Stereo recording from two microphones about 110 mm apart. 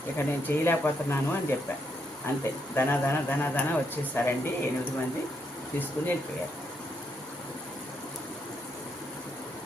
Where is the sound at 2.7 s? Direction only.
20° left (ahead or behind).